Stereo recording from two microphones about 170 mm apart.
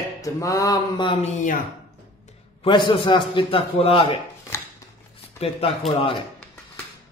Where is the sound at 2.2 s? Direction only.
30° left (ahead or behind).